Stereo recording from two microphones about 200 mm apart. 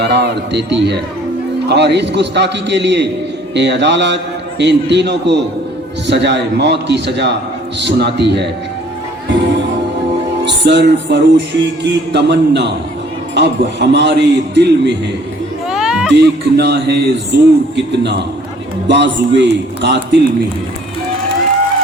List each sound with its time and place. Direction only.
0.0 s music: 55° right (ahead or behind)
10.4 s music: 60° right (ahead or behind)
15.7 s a sound: 5° right (ahead or behind)
16.1 s music: 60° right (ahead or behind)